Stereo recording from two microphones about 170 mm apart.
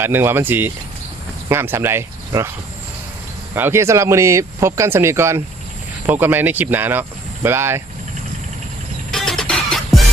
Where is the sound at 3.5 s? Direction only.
15° right (ahead or behind).